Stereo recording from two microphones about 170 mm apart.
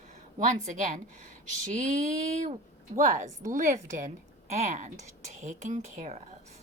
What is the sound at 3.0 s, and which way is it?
Speech, 45° right (ahead or behind).